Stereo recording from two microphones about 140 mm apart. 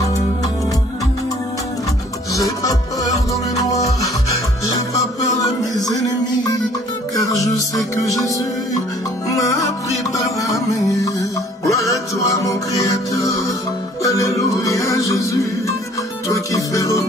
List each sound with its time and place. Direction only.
2.3 s music: 25° left (ahead or behind)
5.4 s music: 25° left (ahead or behind)
9.3 s music: 25° left (ahead or behind)
11.1 s music: 20° left (ahead or behind)